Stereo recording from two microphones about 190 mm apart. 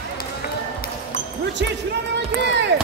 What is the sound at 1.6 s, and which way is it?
Speech, 65° right (ahead or behind).